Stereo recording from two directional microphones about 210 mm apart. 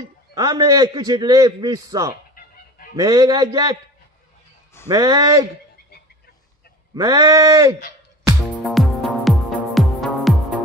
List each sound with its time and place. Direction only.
0.0 s a man's voice: 15° right (ahead or behind)
2.4 s goose: 40° left (ahead or behind)
3.0 s a man's voice: 20° right (ahead or behind)
4.8 s a man's voice: 15° right (ahead or behind)
7.0 s a man's voice: 15° right (ahead or behind)
8.6 s music: centre (ahead or behind)